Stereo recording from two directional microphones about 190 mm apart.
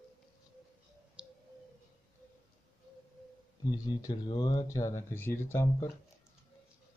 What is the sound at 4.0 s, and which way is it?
Speech, 20° left (ahead or behind).